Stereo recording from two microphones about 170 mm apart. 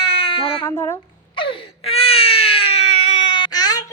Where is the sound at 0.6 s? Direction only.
15° left (ahead or behind).